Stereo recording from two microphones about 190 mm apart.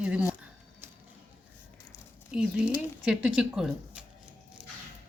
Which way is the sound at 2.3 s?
5° right (ahead or behind).